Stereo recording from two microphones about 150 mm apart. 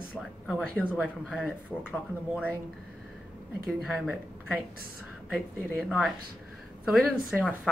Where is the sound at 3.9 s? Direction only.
10° right (ahead or behind).